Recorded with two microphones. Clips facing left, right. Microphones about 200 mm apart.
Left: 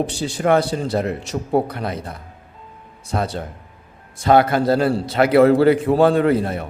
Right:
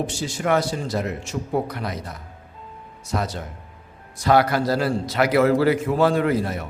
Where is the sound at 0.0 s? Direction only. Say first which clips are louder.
Left 5 dB; 35° left (ahead or behind).